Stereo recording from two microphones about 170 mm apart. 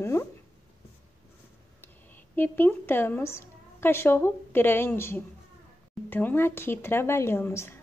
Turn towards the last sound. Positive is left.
turn(degrees=15)  # may be behind; listen again after turning